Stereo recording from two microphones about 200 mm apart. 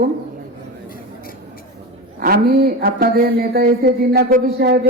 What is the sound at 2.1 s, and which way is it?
A man's voice, 50° right (ahead or behind).